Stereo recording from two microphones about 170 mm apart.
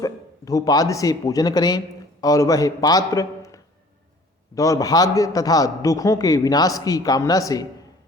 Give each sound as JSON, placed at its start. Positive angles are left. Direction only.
{"t": 0.0, "sound": "a man's voice", "side_deg": 20}